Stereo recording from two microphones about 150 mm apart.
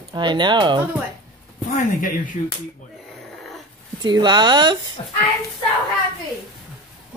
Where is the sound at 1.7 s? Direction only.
60° left (ahead or behind).